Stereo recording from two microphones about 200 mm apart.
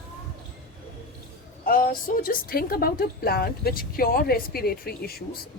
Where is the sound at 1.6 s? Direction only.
45° left (ahead or behind).